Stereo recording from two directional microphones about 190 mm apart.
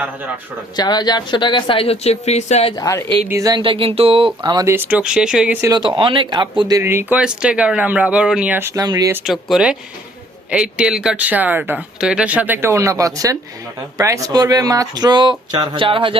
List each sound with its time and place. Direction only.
0.8 s speech: 20° left (ahead or behind)
2.7 s a woman's voice: 15° left (ahead or behind)
3.2 s speech: 15° right (ahead or behind)
4.4 s speech: 15° right (ahead or behind)
5.7 s speech: 25° right (ahead or behind)
9.2 s speech: centre (ahead or behind); by 16.1 s 25° right (ahead or behind)